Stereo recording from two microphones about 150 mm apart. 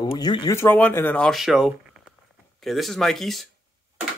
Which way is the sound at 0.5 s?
15° left (ahead or behind).